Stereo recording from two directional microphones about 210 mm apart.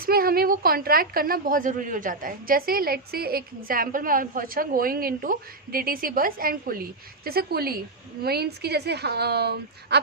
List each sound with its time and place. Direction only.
0.0 s a woman's voice: 45° right (ahead or behind)